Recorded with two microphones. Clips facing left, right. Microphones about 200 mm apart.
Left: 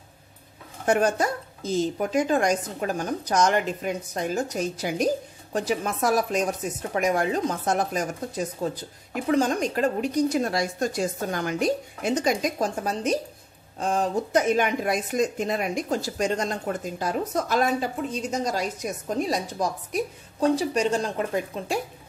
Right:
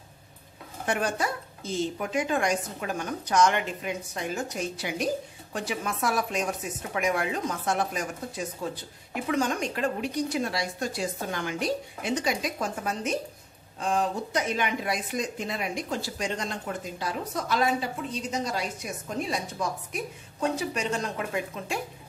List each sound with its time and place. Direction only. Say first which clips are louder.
0.8 s a woman's voice: left 6 dB; 45° left (ahead or behind)